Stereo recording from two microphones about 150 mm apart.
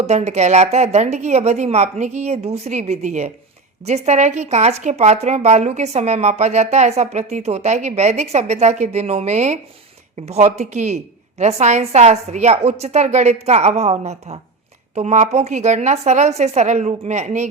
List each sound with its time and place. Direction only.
0.0 s a woman's voice: 45° right (ahead or behind)